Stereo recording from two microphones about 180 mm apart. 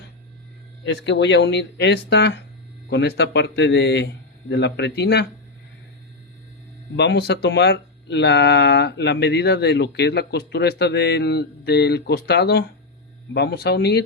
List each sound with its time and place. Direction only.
1.0 s speech: 75° left (ahead or behind)
6.9 s speech: 75° left (ahead or behind)